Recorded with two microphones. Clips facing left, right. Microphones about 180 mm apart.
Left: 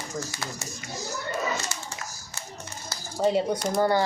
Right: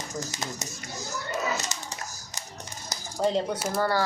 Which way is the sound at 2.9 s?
15° right (ahead or behind).